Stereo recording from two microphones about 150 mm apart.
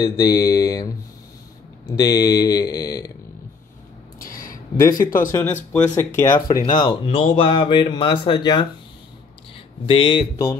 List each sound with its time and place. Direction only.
0.0 s speech: 25° left (ahead or behind)
4.2 s a sound: 70° left (ahead or behind)
5.3 s speech: 10° left (ahead or behind); by 8.6 s 30° left (ahead or behind)
9.8 s speech: 35° left (ahead or behind)
10.3 s speech: 25° left (ahead or behind)